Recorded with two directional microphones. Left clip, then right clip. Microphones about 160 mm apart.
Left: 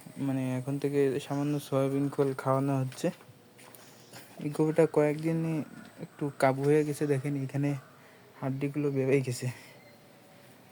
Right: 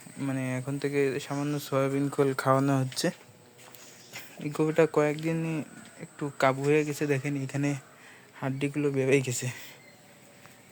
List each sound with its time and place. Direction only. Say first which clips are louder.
0.2 s speech: right 1 dB; 20° left (ahead or behind)
2.0 s speech: right 3 dB; 5° right (ahead or behind)
4.6 s speech: right 1 dB; 20° left (ahead or behind)
7.0 s speech: right 1 dB; 10° left (ahead or behind)
8.4 s speech: right 2 dB; 10° right (ahead or behind)
9.3 s speech: right 4 dB; 10° left (ahead or behind)